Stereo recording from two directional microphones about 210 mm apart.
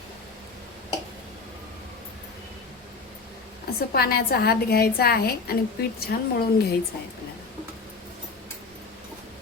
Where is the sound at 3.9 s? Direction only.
45° left (ahead or behind).